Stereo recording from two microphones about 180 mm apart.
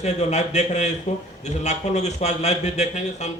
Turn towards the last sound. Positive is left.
turn(degrees=40)  # may be behind; listen again after turning